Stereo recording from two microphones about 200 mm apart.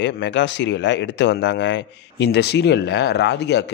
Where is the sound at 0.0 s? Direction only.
65° left (ahead or behind).